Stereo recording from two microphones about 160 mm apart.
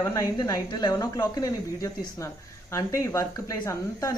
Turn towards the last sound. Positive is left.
turn(degrees=20)  # may be behind; listen again after turning